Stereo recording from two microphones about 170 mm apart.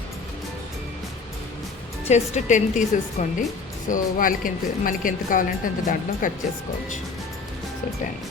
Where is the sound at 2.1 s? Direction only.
45° left (ahead or behind).